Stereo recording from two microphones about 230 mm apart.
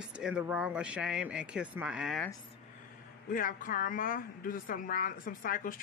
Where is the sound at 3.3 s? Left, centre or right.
Left.